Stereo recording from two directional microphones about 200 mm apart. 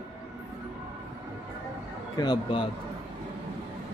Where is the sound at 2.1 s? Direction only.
20° left (ahead or behind).